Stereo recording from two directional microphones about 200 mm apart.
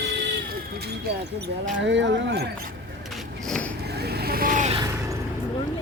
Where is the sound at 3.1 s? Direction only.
5° left (ahead or behind).